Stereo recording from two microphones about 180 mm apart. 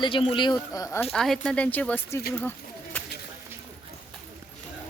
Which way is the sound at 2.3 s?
10° left (ahead or behind).